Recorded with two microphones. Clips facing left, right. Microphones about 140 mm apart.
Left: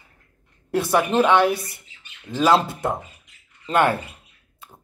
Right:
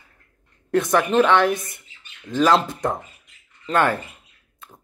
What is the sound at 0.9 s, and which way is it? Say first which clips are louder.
Speech: even; 10° left (ahead or behind).